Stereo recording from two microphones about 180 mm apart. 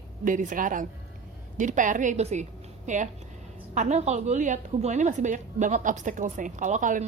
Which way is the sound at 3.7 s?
40° right (ahead or behind).